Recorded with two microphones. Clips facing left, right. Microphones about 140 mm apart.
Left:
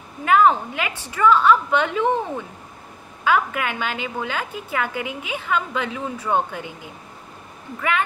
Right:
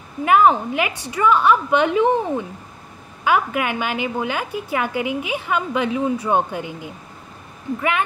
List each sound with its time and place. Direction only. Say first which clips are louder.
0.2 s a woman's voice: right 2 dB; 15° right (ahead or behind)